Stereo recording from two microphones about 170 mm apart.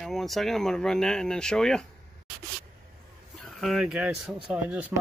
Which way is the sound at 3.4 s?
Centre (ahead or behind).